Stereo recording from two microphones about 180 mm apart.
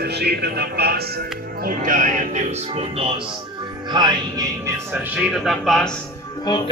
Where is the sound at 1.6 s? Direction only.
45° right (ahead or behind).